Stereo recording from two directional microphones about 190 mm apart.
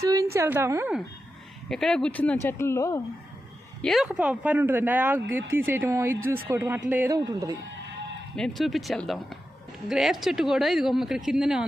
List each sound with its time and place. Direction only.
0.0 s a woman's voice: 15° right (ahead or behind)
1.7 s speech: 5° left (ahead or behind)
3.8 s speech: centre (ahead or behind); by 7.5 s 20° right (ahead or behind)
8.4 s speech: centre (ahead or behind)